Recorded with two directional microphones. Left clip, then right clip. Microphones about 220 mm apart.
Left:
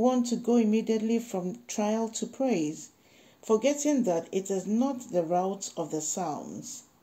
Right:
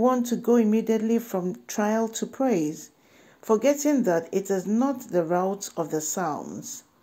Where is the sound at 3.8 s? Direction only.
20° right (ahead or behind).